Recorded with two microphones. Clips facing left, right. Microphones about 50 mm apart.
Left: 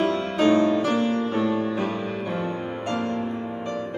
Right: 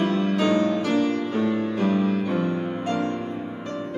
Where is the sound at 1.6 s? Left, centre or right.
Centre.